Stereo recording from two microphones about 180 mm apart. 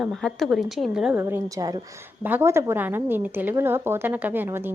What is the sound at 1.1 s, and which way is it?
A woman's voice, 15° right (ahead or behind).